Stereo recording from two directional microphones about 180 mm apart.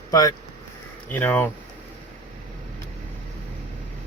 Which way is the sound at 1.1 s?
10° left (ahead or behind).